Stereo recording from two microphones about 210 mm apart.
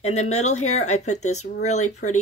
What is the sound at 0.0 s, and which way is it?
Speech, 30° left (ahead or behind).